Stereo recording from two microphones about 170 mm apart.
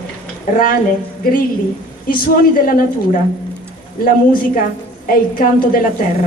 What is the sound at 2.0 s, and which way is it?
Speech, 55° left (ahead or behind).